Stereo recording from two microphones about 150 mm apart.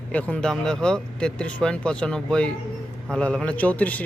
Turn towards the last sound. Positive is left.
turn(degrees=10)  # may be behind; listen again after turning